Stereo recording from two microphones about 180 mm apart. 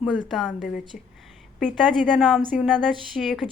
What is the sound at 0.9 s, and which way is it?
Speech, 50° left (ahead or behind).